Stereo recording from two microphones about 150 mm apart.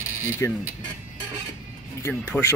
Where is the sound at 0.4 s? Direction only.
15° left (ahead or behind).